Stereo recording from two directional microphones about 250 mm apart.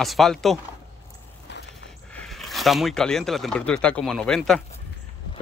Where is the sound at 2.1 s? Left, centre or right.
Centre.